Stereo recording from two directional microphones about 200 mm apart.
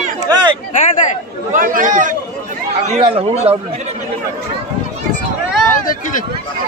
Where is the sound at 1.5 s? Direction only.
45° right (ahead or behind).